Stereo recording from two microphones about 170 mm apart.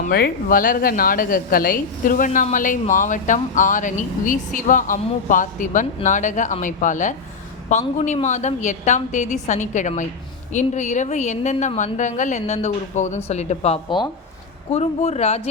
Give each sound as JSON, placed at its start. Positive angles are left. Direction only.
{"t": 0.1, "sound": "a woman's voice", "side_deg": 65}